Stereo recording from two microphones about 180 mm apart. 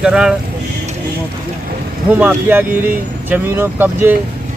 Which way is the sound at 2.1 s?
10° right (ahead or behind).